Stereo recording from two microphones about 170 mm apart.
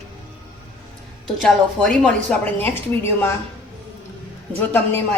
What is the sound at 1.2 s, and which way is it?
A woman's voice, centre (ahead or behind).